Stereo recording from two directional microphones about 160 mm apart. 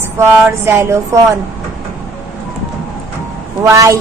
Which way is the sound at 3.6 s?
20° right (ahead or behind).